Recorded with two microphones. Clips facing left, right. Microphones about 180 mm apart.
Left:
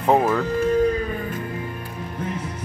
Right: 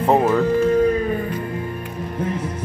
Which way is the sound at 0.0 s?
5° right (ahead or behind).